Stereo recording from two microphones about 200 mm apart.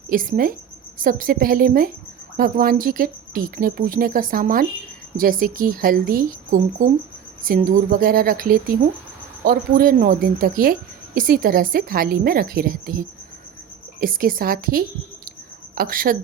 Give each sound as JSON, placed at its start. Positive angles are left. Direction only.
{"t": 0.1, "sound": "a woman's voice", "side_deg": -45}